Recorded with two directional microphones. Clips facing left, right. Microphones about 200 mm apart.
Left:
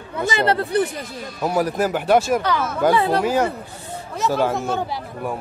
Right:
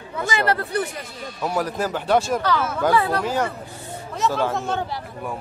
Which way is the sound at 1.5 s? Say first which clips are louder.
Left 4 dB; 10° left (ahead or behind).